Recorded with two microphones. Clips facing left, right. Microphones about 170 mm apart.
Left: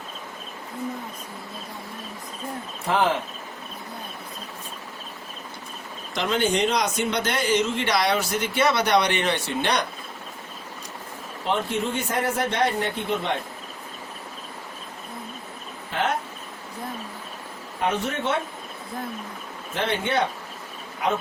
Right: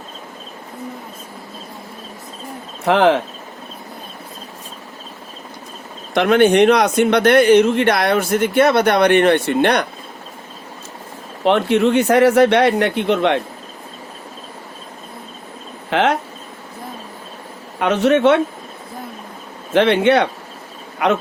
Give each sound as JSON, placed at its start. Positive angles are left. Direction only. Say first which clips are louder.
{"t": 2.8, "sound": "speech", "louder": "right 9 dB", "side_deg": -75}
{"t": 6.1, "sound": "speech", "louder": "right 11 dB", "side_deg": -65}
{"t": 11.4, "sound": "speech", "louder": "right 11 dB", "side_deg": -75}
{"t": 15.9, "sound": "speech", "louder": "right 9 dB", "side_deg": -85}
{"t": 17.7, "sound": "a man's voice", "louder": "right 11 dB", "side_deg": -80}
{"t": 19.7, "sound": "a man's voice", "louder": "right 12 dB", "side_deg": -80}